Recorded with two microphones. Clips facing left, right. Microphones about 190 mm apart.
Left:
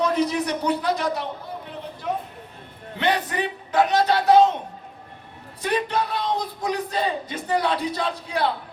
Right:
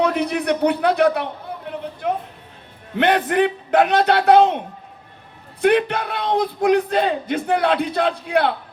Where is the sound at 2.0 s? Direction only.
60° right (ahead or behind).